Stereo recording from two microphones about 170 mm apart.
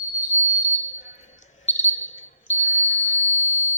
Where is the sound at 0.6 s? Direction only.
45° left (ahead or behind).